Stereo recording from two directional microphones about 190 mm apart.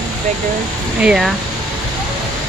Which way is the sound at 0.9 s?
5° right (ahead or behind).